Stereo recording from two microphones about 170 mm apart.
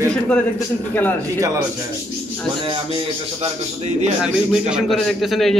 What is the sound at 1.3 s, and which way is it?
Speech, 20° right (ahead or behind).